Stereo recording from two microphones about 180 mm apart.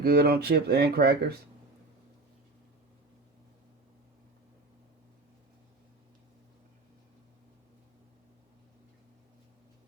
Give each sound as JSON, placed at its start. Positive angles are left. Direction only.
{"t": 0.0, "sound": "speech", "side_deg": -60}